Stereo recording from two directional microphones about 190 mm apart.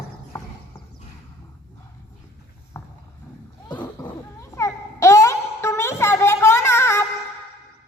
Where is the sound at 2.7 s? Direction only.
15° left (ahead or behind).